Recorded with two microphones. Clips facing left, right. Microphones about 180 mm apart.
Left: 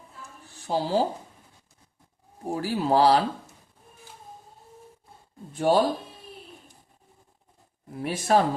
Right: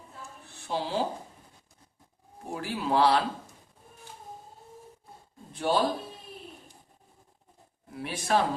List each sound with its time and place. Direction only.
0.7 s a man's voice: 40° left (ahead or behind)
2.5 s a man's voice: 40° left (ahead or behind)
5.5 s speech: 45° left (ahead or behind)
7.9 s speech: 45° left (ahead or behind)